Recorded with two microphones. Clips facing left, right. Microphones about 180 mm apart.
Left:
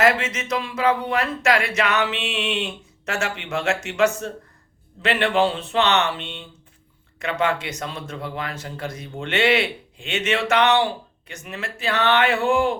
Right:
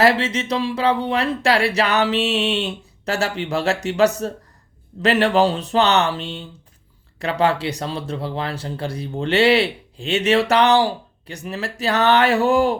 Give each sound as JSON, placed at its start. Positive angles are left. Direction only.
{"t": 0.0, "sound": "speech", "side_deg": -35}